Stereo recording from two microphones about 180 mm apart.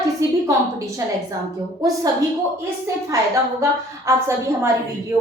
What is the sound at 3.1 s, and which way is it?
A woman's voice, 20° right (ahead or behind).